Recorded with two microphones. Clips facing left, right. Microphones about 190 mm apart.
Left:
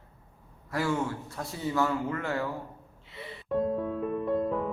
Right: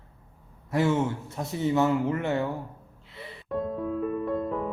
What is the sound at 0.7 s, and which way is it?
Speech, 20° right (ahead or behind).